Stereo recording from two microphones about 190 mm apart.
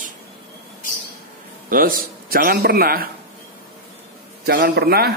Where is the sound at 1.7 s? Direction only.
50° right (ahead or behind).